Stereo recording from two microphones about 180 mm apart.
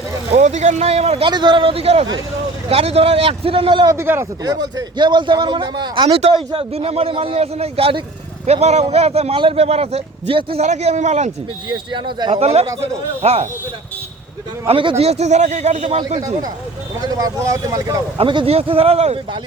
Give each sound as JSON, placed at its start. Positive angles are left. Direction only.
{"t": 0.3, "sound": "speech", "side_deg": -40}
{"t": 1.3, "sound": "a man's voice", "side_deg": -25}
{"t": 3.9, "sound": "a man's voice", "side_deg": -15}
{"t": 11.7, "sound": "a man's voice", "side_deg": -25}
{"t": 12.3, "sound": "speech", "side_deg": -35}
{"t": 14.7, "sound": "speech", "side_deg": -30}
{"t": 17.0, "sound": "a man's voice", "side_deg": -20}
{"t": 18.2, "sound": "speech", "side_deg": -30}